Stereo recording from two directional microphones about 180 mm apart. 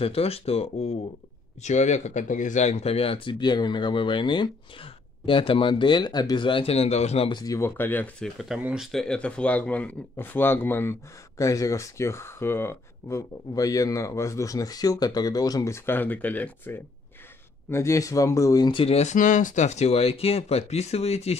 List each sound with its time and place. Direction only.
0.0 s speech: 35° left (ahead or behind)